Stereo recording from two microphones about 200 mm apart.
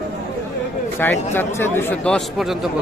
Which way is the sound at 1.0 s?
10° left (ahead or behind).